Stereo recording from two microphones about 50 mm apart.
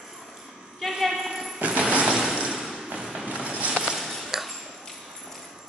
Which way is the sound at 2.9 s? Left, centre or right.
Centre.